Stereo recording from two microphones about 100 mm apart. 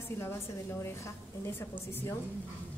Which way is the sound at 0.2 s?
25° left (ahead or behind).